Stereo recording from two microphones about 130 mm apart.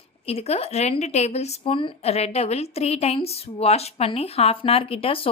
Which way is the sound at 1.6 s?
40° left (ahead or behind).